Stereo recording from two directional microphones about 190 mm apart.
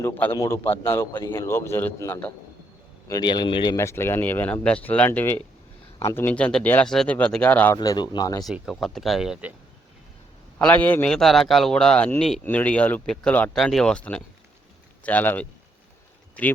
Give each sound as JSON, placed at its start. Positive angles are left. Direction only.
{"t": 0.0, "sound": "speech", "side_deg": 10}
{"t": 7.8, "sound": "a man's voice", "side_deg": 20}
{"t": 8.4, "sound": "speech", "side_deg": 0}
{"t": 10.6, "sound": "speech", "side_deg": 10}